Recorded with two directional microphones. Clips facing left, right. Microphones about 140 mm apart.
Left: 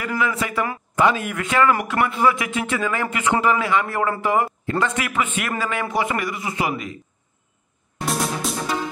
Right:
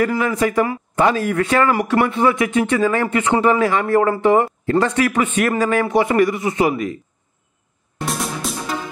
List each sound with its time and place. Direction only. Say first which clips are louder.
0.2 s speech: right 5 dB; 40° right (ahead or behind)
0.6 s speech: right 3 dB; 30° right (ahead or behind)
8.0 s music: even; centre (ahead or behind)